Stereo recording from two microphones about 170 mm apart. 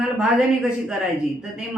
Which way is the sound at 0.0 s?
5° right (ahead or behind).